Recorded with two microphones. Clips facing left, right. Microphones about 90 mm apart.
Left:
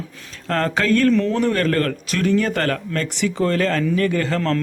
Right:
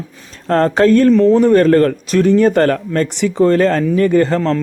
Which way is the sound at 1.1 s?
20° right (ahead or behind).